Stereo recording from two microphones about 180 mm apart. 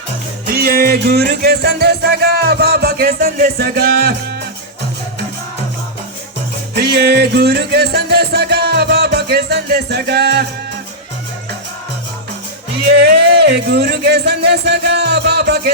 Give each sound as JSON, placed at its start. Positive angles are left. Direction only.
{"t": 0.4, "sound": "music", "side_deg": -60}
{"t": 6.7, "sound": "music", "side_deg": -60}
{"t": 12.8, "sound": "speech", "side_deg": -65}